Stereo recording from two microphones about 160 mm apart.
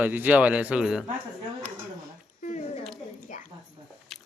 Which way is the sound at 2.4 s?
50° left (ahead or behind).